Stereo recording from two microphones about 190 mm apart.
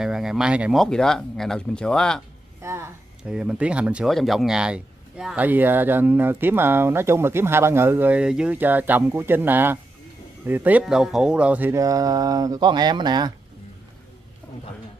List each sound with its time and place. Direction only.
0.0 s speech: 5° right (ahead or behind)
2.6 s speech: 15° right (ahead or behind)